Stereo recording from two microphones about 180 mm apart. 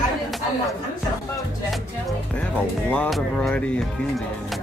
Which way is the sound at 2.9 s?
5° left (ahead or behind).